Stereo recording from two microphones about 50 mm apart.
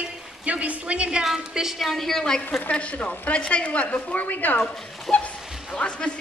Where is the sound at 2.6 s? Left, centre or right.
Left.